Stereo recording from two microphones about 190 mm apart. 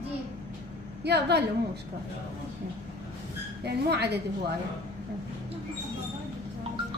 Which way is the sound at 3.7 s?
60° right (ahead or behind).